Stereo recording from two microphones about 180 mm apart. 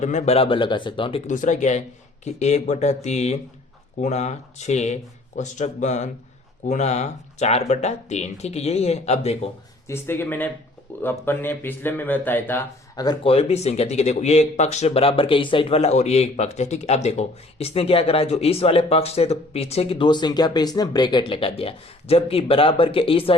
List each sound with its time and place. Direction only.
0.0 s speech: 40° left (ahead or behind)
1.3 s speech: 45° left (ahead or behind)
9.8 s speech: 15° left (ahead or behind); by 23.3 s 30° left (ahead or behind)